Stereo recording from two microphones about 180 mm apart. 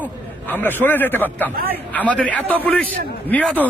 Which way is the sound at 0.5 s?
10° left (ahead or behind).